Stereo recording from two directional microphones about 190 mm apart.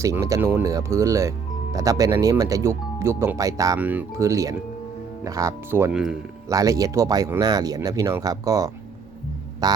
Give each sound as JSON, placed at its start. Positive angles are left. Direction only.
{"t": 0.0, "sound": "speech", "side_deg": -15}
{"t": 6.5, "sound": "speech", "side_deg": -20}
{"t": 9.6, "sound": "music", "side_deg": -20}